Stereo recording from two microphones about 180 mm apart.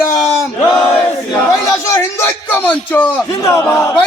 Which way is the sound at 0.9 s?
15° left (ahead or behind).